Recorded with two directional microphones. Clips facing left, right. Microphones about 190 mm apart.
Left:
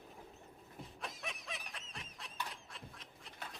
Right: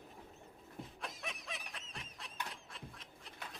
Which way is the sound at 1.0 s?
Centre (ahead or behind).